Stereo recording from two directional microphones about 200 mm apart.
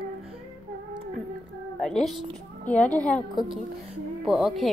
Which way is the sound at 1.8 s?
Centre (ahead or behind).